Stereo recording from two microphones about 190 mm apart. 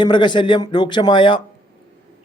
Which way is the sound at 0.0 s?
25° left (ahead or behind).